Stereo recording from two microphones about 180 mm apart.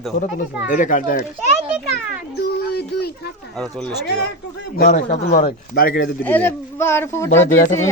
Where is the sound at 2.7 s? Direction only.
60° left (ahead or behind).